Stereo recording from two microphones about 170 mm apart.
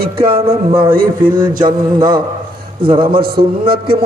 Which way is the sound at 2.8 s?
30° right (ahead or behind).